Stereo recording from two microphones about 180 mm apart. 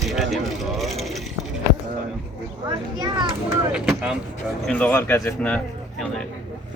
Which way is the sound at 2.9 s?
25° right (ahead or behind).